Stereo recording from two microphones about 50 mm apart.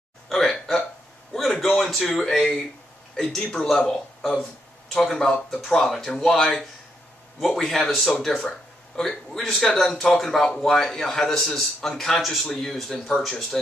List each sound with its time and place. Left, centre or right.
0.3 s hiccup: centre
1.6 s a sound: centre
2.2 s a man's voice: centre
12.4 s a man's voice: centre